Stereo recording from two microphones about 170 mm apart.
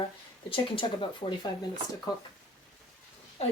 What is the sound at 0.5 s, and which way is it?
Speech, 30° left (ahead or behind).